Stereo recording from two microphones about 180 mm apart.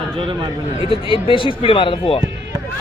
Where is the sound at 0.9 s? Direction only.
30° left (ahead or behind).